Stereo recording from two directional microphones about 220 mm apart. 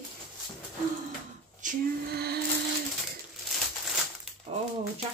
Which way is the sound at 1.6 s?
35° right (ahead or behind).